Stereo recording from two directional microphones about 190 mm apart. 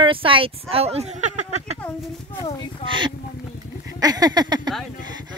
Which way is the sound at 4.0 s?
20° right (ahead or behind).